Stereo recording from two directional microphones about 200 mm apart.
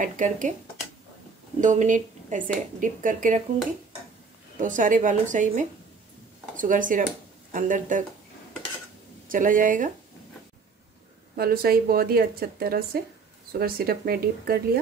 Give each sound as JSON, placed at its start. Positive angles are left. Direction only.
{"t": 0.0, "sound": "speech", "side_deg": -40}
{"t": 1.6, "sound": "speech", "side_deg": -40}
{"t": 4.6, "sound": "speech", "side_deg": -40}
{"t": 9.3, "sound": "speech", "side_deg": -40}
{"t": 11.3, "sound": "speech", "side_deg": -50}